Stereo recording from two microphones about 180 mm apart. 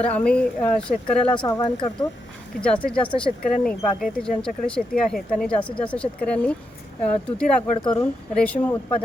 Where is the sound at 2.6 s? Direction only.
5° left (ahead or behind).